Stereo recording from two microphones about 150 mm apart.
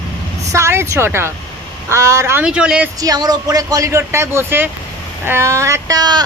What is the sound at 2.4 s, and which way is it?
Speech, 5° right (ahead or behind).